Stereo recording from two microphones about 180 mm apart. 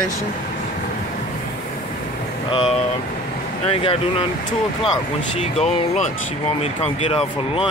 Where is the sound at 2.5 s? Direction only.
30° left (ahead or behind).